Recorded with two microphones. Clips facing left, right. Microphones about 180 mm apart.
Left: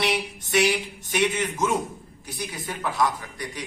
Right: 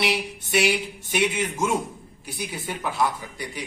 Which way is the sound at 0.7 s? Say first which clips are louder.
Right 1 dB; 5° right (ahead or behind).